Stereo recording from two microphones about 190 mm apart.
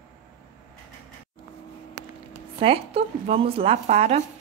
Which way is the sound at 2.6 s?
30° right (ahead or behind).